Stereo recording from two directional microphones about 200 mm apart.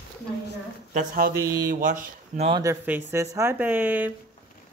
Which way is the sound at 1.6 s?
40° right (ahead or behind).